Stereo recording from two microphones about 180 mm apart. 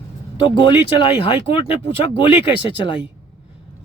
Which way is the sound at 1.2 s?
30° left (ahead or behind).